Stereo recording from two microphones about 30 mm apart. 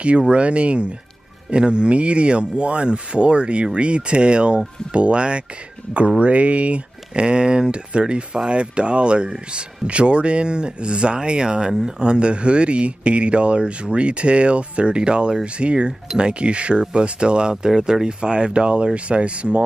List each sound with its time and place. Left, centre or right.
0.3 s speech: right
1.5 s speech: right
17.6 s speech: centre; by 19.6 s right